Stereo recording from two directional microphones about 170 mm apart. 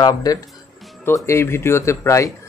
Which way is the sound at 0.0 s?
20° left (ahead or behind).